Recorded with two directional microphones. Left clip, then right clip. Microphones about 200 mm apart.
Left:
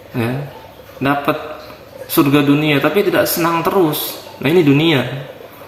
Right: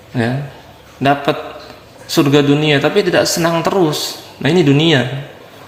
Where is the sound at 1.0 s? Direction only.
35° right (ahead or behind).